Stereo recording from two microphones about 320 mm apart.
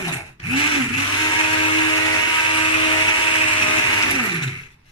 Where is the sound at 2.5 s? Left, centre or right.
Centre.